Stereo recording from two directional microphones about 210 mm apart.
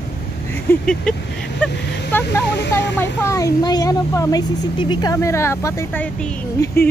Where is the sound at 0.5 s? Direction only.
5° left (ahead or behind).